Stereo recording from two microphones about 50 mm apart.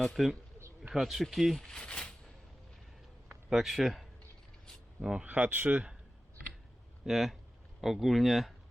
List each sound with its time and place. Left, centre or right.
0.2 s speech: centre
1.6 s speech: centre
3.5 s speech: centre
5.2 s speech: right
7.0 s speech: centre